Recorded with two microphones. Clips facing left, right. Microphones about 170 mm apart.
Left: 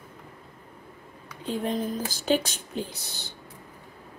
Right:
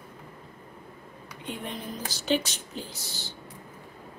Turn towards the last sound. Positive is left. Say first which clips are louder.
# left 5 dB
turn(degrees=60)  # may be behind; listen again after turning